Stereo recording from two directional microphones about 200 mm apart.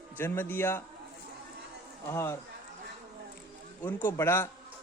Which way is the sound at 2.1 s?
15° left (ahead or behind).